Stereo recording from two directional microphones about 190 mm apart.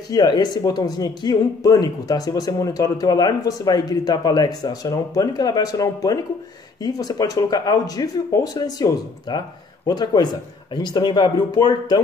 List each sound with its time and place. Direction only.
0.1 s speech: 20° left (ahead or behind)